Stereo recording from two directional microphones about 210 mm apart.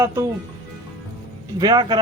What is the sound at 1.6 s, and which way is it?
Speech, 20° right (ahead or behind).